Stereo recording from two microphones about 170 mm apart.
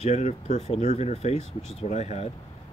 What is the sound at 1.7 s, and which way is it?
Speech, 40° left (ahead or behind).